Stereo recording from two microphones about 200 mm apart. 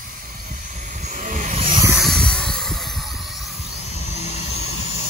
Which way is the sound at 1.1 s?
40° right (ahead or behind).